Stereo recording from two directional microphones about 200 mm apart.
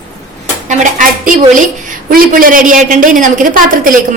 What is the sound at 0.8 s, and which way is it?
A woman's voice, 40° right (ahead or behind).